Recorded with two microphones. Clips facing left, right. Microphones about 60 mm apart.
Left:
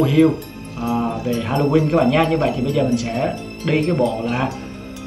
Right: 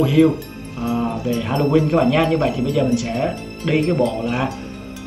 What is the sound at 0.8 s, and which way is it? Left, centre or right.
Speech, centre.